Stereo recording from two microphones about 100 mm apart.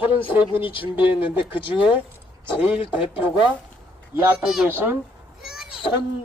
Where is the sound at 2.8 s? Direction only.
60° left (ahead or behind).